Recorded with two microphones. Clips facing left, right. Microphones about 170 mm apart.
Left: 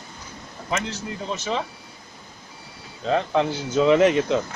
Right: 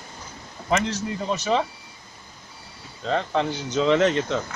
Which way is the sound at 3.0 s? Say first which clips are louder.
Left 2 dB; 5° left (ahead or behind).